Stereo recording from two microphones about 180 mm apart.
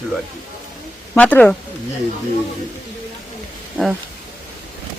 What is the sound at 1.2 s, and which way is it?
Speech, 10° left (ahead or behind).